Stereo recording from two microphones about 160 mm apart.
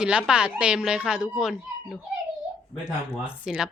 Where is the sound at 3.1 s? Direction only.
5° right (ahead or behind).